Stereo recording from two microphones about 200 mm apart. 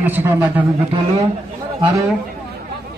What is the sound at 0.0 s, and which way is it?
Speech, 10° right (ahead or behind).